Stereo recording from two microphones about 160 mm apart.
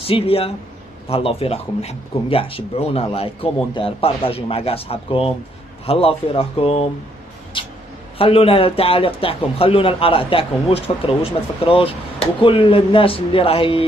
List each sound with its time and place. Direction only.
0.0 s a man's voice: 35° left (ahead or behind)
7.5 s a sound: 30° left (ahead or behind)
8.2 s a man's voice: 35° left (ahead or behind)